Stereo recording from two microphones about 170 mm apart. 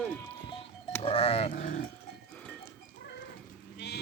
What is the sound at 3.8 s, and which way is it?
Sheep, 80° left.